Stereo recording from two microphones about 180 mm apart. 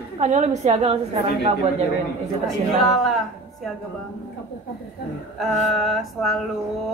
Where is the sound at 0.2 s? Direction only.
40° right (ahead or behind).